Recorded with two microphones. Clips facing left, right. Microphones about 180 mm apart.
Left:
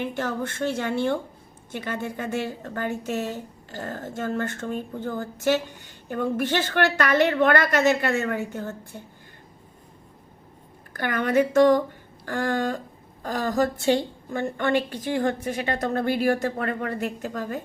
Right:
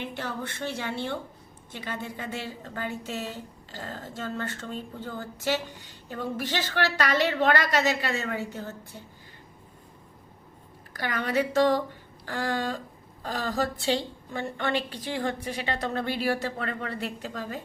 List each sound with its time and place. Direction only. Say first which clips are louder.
0.0 s a woman's voice: left 6 dB; 45° left (ahead or behind)
10.9 s a woman's voice: left 5 dB; 50° left (ahead or behind)